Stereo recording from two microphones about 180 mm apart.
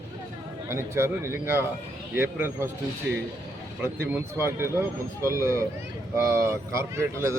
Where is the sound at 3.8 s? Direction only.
15° right (ahead or behind).